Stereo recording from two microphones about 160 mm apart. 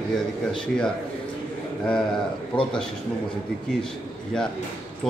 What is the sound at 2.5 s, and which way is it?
Speech, 30° left (ahead or behind).